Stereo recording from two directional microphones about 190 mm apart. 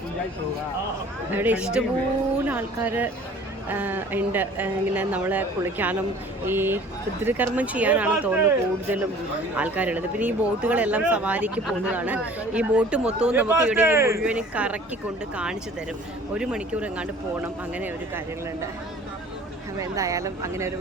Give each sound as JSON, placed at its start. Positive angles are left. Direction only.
{"t": 1.3, "sound": "speech", "side_deg": -10}
{"t": 16.3, "sound": "speech", "side_deg": -5}
{"t": 19.8, "sound": "speech", "side_deg": -15}